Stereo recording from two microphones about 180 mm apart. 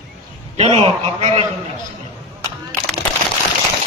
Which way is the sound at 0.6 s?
35° right (ahead or behind).